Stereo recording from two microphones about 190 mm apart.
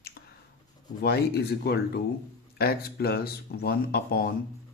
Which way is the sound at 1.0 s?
55° left (ahead or behind).